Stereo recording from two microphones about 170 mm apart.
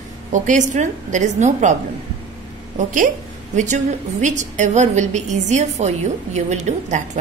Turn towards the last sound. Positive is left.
turn(degrees=-45)  # may be behind; listen again after turning